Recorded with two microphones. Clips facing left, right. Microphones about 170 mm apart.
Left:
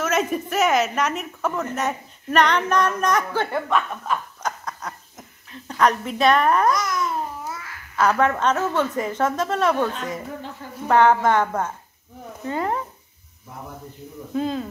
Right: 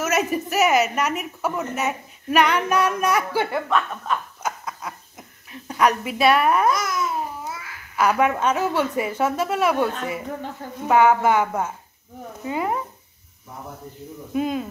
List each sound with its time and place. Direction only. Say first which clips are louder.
0.0 s a woman's voice: even; 5° right (ahead or behind)
3.6 s snicker: even; 5° left (ahead or behind)
4.4 s a sound: even; 10° right (ahead or behind)
10.9 s a woman's voice: even; 10° right (ahead or behind)
14.3 s a woman's voice: right 1 dB; 15° right (ahead or behind)